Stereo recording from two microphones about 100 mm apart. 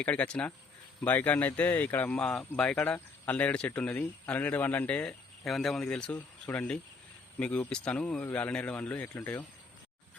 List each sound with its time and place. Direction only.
0.0 s speech: 15° left (ahead or behind)
5.5 s speech: centre (ahead or behind); by 9.5 s 15° left (ahead or behind)